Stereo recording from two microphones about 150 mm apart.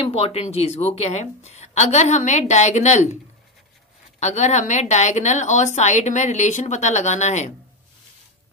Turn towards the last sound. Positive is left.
turn(degrees=50)  # may be behind; listen again after turning